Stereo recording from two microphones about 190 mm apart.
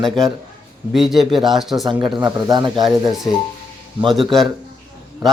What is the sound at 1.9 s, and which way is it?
Speech, 25° right (ahead or behind).